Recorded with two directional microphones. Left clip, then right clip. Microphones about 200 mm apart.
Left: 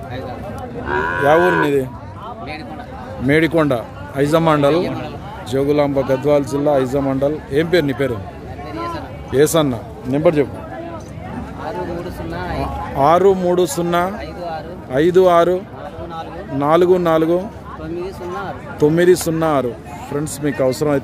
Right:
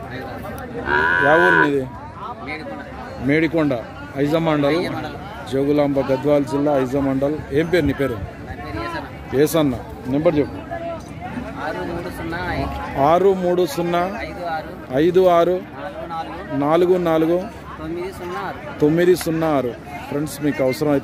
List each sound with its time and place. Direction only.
0.8 s speech: 5° right (ahead or behind)
3.3 s a man's voice: 15° left (ahead or behind)
5.5 s speech: 5° left (ahead or behind)
9.3 s speech: 5° left (ahead or behind)
12.3 s speech: 25° left (ahead or behind)
13.0 s speech: centre (ahead or behind)